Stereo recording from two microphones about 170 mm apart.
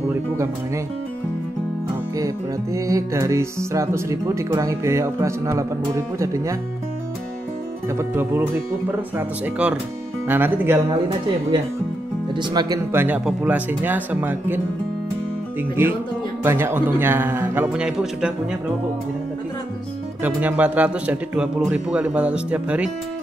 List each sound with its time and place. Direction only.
2.1 s music: 20° right (ahead or behind)
8.0 s music: 10° right (ahead or behind)
12.4 s music: 25° right (ahead or behind)
16.4 s music: 15° right (ahead or behind)
20.2 s music: 10° right (ahead or behind)